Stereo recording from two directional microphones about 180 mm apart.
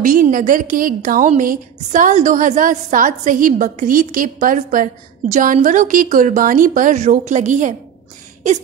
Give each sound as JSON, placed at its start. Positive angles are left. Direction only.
{"t": 0.0, "sound": "a woman's voice", "side_deg": -50}